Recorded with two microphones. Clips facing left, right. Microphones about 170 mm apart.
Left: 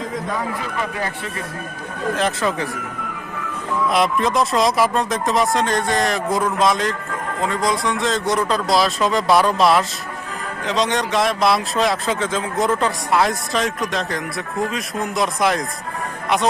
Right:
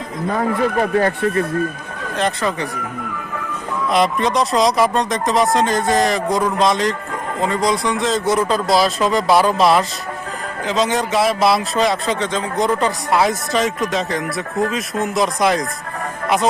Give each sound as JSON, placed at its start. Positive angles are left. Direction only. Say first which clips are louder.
{"t": 0.3, "sound": "speech", "louder": "right 7 dB", "side_deg": -50}
{"t": 2.1, "sound": "speech", "louder": "right 2 dB", "side_deg": 0}
{"t": 3.8, "sound": "speech", "louder": "right 2 dB", "side_deg": 0}